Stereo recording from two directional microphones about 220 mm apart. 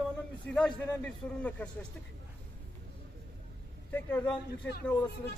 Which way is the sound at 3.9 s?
5° left (ahead or behind).